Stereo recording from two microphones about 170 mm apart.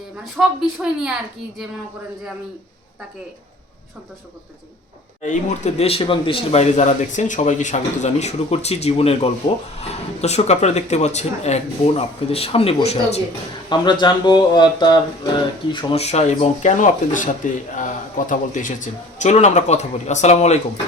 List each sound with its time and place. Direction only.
0.3 s a woman's voice: 5° right (ahead or behind)
5.2 s speech: 45° left (ahead or behind)
13.7 s speech: 25° left (ahead or behind)